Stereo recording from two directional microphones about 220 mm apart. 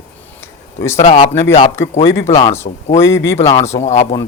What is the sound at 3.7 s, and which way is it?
Speech, 30° left (ahead or behind).